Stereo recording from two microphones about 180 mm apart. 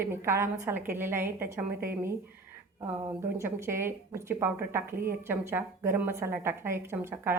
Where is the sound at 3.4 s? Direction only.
15° right (ahead or behind).